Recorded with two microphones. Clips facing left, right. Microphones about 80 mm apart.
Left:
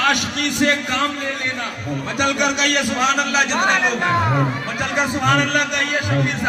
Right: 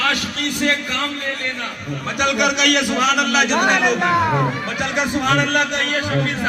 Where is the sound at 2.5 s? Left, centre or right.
Left.